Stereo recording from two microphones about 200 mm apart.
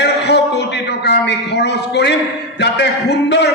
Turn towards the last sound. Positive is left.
turn(degrees=60)  # may be behind; listen again after turning